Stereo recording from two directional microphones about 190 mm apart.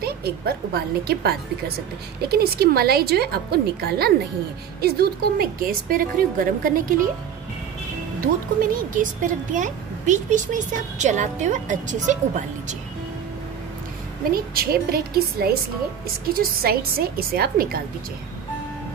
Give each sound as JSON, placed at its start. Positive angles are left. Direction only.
{"t": 0.0, "sound": "a woman's voice", "side_deg": -55}
{"t": 8.5, "sound": "a woman's voice", "side_deg": -45}
{"t": 14.3, "sound": "a woman's voice", "side_deg": -50}